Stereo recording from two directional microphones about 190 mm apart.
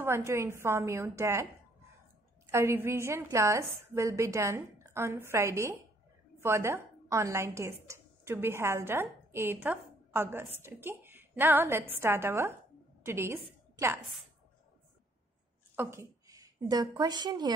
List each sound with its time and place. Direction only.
0.0 s a woman's voice: 15° right (ahead or behind)
2.5 s a woman's voice: 15° right (ahead or behind)
15.7 s a woman's voice: 15° right (ahead or behind)